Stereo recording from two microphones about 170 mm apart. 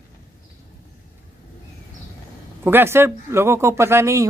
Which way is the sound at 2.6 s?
10° right (ahead or behind).